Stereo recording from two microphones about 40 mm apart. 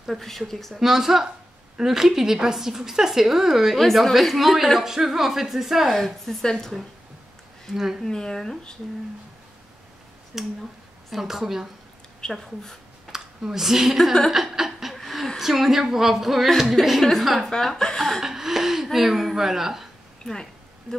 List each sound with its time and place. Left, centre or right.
0.5 s speech: centre
0.7 s a woman's voice: centre
5.9 s a woman's voice: centre
7.7 s a woman's voice: centre
8.0 s speech: centre
10.3 s a woman's voice: centre
12.2 s speech: centre
13.1 s speech: centre
14.3 s a sound: centre
15.3 s a woman's voice: centre
16.8 s speech: centre
17.2 s a woman's voice: centre
18.2 s gasp: centre
18.9 s a woman's voice: centre